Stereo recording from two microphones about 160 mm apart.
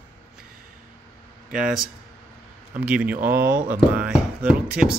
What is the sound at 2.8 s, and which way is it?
Speech, 10° right (ahead or behind).